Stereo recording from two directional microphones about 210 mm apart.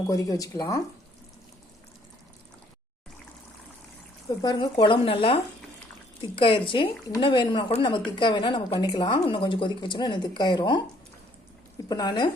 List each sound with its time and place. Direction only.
0.1 s speech: 15° left (ahead or behind)
4.4 s a woman's voice: 25° left (ahead or behind)
11.9 s speech: 20° left (ahead or behind)